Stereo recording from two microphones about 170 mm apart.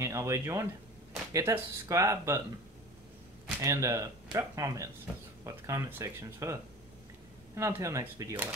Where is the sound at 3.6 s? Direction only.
15° right (ahead or behind).